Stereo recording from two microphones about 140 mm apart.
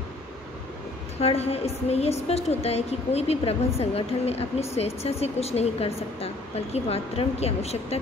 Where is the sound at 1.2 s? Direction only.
45° left (ahead or behind).